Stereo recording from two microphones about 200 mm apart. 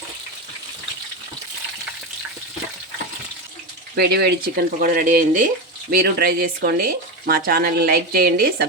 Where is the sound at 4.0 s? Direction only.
55° right (ahead or behind).